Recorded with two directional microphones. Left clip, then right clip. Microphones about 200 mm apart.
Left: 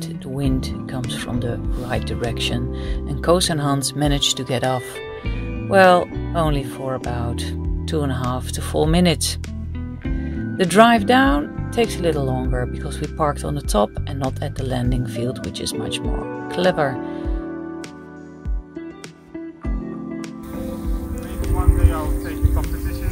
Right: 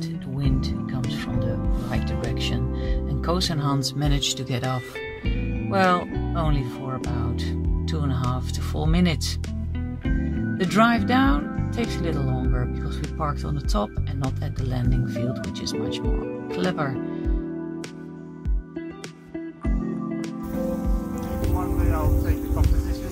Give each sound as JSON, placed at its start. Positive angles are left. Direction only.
{"t": 0.4, "sound": "music", "side_deg": 35}
{"t": 1.1, "sound": "speech", "side_deg": 35}
{"t": 10.6, "sound": "speech", "side_deg": 35}
{"t": 21.4, "sound": "music", "side_deg": 0}